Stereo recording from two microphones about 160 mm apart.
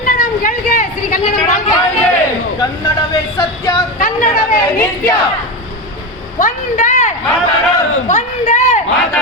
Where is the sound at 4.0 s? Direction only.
55° left (ahead or behind).